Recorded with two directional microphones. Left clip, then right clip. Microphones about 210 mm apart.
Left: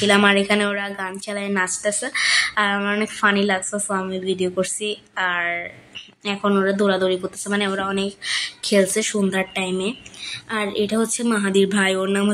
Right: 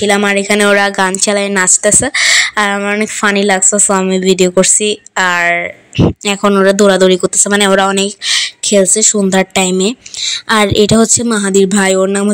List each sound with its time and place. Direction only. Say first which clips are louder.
0.0 s a woman's voice: right 5 dB; 25° right (ahead or behind)
0.6 s speech: right 14 dB; 45° right (ahead or behind)